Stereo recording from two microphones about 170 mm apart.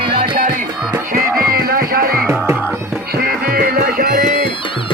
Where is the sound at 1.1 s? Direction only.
60° right (ahead or behind).